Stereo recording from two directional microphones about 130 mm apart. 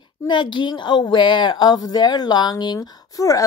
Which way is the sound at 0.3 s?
35° left (ahead or behind).